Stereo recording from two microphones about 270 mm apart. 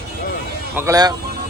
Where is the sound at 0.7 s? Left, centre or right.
Centre.